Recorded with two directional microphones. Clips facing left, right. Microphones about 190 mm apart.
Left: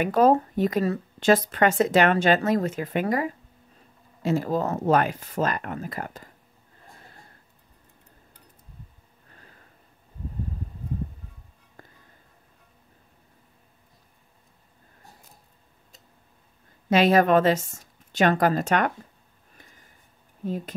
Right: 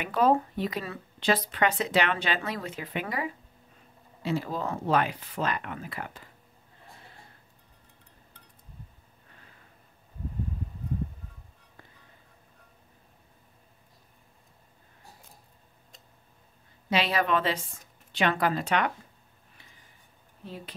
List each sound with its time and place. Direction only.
0.0 s speech: 45° left (ahead or behind)
11.8 s music: 45° left (ahead or behind)
16.9 s speech: 45° left (ahead or behind)
20.4 s speech: 45° left (ahead or behind)